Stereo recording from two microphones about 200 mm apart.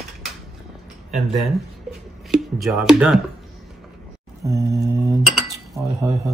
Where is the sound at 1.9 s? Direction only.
Centre (ahead or behind).